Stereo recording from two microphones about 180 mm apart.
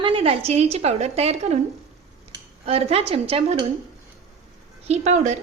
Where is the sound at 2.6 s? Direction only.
35° right (ahead or behind).